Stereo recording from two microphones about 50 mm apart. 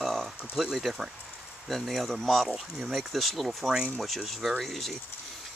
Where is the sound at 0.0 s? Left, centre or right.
Centre.